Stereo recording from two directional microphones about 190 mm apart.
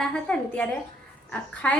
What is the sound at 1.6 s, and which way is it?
Speech, 5° left (ahead or behind).